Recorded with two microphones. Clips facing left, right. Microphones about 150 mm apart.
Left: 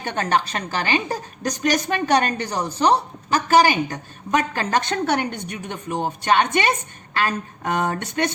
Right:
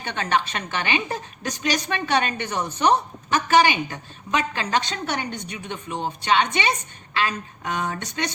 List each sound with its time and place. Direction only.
0.0 s a woman's voice: 45° left (ahead or behind)